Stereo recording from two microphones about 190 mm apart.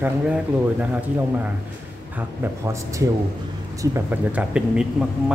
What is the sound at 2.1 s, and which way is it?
Speech, 15° right (ahead or behind).